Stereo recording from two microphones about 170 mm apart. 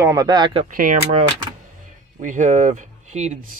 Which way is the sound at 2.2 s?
50° right (ahead or behind).